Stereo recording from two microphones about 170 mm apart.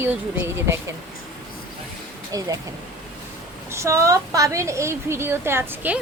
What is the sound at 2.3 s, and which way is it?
Speech, 20° right (ahead or behind).